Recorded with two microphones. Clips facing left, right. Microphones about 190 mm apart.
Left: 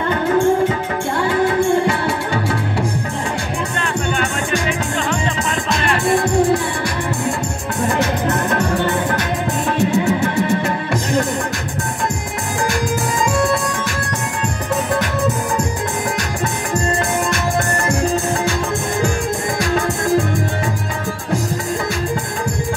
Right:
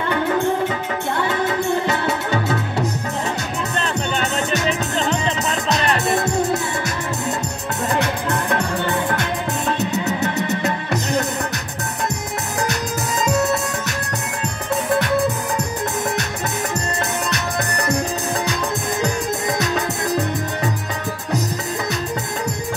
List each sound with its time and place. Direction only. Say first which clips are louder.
1.6 s music: left 4 dB; 20° right (ahead or behind)
6.0 s music: left 5 dB; 20° right (ahead or behind)
9.8 s music: left 6 dB; 20° right (ahead or behind)
19.6 s music: left 3 dB; 20° right (ahead or behind)